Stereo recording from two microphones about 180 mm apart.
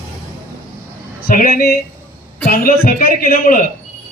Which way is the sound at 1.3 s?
50° left (ahead or behind).